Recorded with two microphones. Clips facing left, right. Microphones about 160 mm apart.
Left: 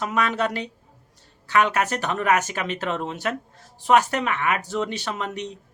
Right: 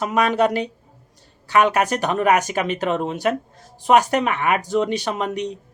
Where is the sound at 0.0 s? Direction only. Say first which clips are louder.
Right 6 dB; 15° right (ahead or behind).